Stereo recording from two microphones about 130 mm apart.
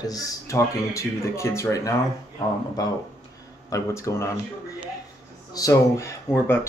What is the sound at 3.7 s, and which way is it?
Speech, 25° left (ahead or behind).